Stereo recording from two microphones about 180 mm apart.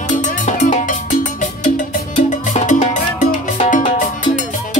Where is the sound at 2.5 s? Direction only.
40° left (ahead or behind).